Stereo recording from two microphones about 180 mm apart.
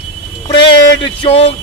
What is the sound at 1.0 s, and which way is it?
Speech, 30° left (ahead or behind).